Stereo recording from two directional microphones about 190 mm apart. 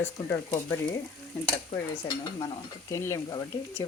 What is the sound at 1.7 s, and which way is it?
Stir, 20° left (ahead or behind).